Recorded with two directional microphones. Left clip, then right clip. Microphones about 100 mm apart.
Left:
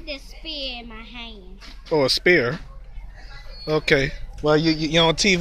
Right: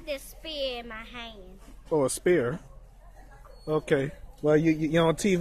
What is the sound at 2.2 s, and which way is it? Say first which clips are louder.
Speech: left 7 dB; centre (ahead or behind).